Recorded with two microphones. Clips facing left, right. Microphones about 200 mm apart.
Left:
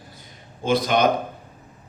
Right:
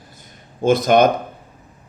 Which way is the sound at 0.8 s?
50° right (ahead or behind).